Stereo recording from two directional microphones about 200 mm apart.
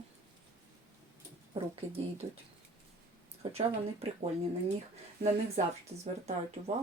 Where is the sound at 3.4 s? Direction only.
30° right (ahead or behind).